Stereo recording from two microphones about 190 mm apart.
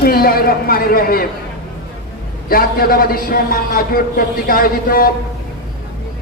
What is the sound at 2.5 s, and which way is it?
A man's voice, 50° left (ahead or behind).